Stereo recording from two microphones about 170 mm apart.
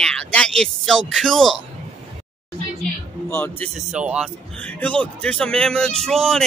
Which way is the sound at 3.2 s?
10° left (ahead or behind).